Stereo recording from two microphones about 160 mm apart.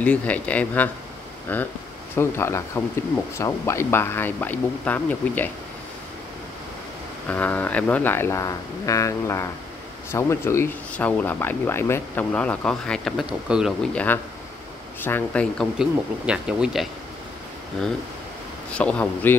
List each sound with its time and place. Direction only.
0.0 s speech: 10° left (ahead or behind)
7.2 s speech: 10° left (ahead or behind)
13.9 s speech: 10° left (ahead or behind); by 16.8 s 5° right (ahead or behind)
18.7 s speech: 5° left (ahead or behind)